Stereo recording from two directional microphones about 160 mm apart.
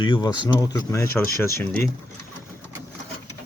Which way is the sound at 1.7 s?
Centre (ahead or behind).